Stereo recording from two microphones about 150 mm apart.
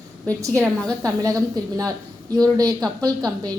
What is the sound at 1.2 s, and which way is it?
Speech, 20° right (ahead or behind).